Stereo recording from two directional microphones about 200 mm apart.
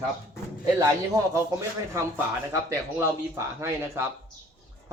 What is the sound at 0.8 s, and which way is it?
Speech, 15° right (ahead or behind).